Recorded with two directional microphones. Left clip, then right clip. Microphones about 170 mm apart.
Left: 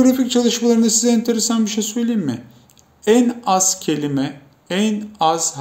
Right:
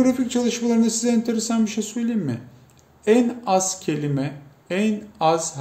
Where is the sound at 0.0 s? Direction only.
15° right (ahead or behind).